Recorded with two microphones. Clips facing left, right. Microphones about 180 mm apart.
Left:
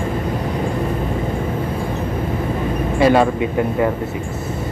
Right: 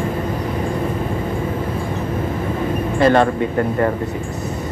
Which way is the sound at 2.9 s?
10° left (ahead or behind).